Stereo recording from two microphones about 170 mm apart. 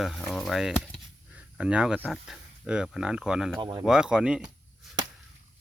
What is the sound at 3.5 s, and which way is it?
Speech, 25° right (ahead or behind).